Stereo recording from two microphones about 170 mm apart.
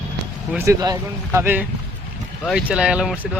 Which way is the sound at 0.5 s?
15° right (ahead or behind).